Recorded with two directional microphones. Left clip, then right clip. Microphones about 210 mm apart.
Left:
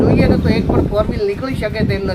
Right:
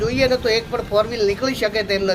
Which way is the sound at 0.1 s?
5° right (ahead or behind).